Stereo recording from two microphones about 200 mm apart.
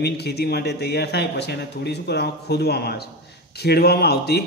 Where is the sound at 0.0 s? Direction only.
55° left (ahead or behind).